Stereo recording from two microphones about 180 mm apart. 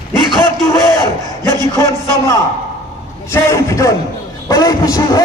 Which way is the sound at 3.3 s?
15° left (ahead or behind).